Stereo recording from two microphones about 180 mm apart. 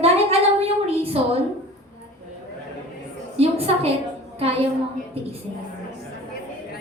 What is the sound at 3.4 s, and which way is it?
A woman's voice, 35° right (ahead or behind).